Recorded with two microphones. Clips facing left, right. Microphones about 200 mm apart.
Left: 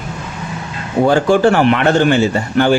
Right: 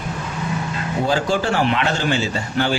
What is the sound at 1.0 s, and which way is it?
A man's voice, 55° left (ahead or behind).